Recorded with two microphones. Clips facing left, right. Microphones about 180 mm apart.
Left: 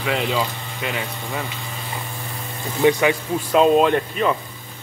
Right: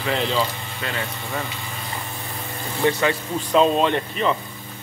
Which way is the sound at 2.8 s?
15° left (ahead or behind).